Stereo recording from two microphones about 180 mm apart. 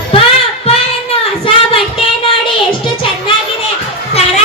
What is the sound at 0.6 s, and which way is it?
Child singing, 30° left (ahead or behind).